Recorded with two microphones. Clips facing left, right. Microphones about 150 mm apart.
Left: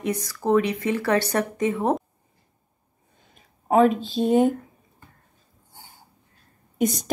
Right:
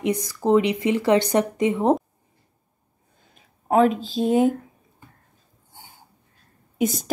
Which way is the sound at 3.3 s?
Centre (ahead or behind).